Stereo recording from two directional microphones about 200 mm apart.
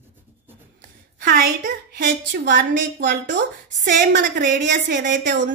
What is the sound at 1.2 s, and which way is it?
A woman's voice, 40° right (ahead or behind).